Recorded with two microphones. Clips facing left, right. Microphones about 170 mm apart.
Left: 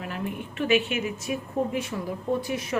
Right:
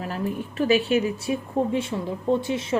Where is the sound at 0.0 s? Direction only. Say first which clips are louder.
Right 4 dB; 35° right (ahead or behind).